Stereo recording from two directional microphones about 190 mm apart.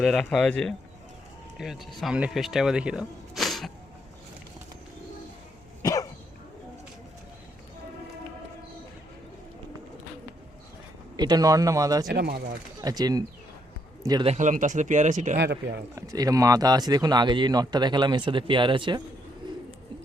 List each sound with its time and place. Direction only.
0.0 s speech: 5° left (ahead or behind)
5.8 s cough: 20° left (ahead or behind)
11.2 s speech: 20° right (ahead or behind)
12.0 s speech: 60° right (ahead or behind)
12.8 s speech: 20° right (ahead or behind)
14.3 s speech: 40° right (ahead or behind)
16.0 s speech: 20° right (ahead or behind)